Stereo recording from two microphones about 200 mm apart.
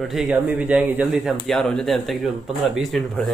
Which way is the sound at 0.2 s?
5° right (ahead or behind).